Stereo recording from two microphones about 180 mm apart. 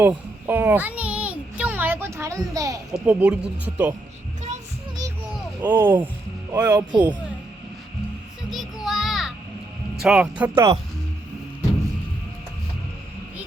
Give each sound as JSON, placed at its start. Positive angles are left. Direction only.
{"t": 0.0, "sound": "a sound", "side_deg": -10}
{"t": 2.9, "sound": "speech", "side_deg": -10}
{"t": 5.3, "sound": "a sound", "side_deg": -10}
{"t": 6.5, "sound": "speech", "side_deg": -10}
{"t": 6.7, "sound": "speech", "side_deg": -25}
{"t": 8.4, "sound": "music", "side_deg": 0}
{"t": 10.0, "sound": "speech", "side_deg": -5}